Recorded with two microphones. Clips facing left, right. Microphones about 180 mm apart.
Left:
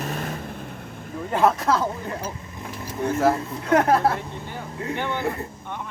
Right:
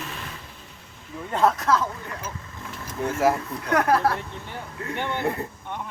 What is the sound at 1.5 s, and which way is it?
Speech, 30° left (ahead or behind).